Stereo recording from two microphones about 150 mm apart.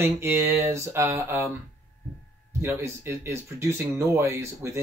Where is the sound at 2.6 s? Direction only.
15° right (ahead or behind).